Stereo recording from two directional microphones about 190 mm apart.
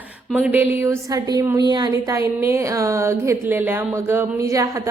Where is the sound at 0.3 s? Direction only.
10° right (ahead or behind).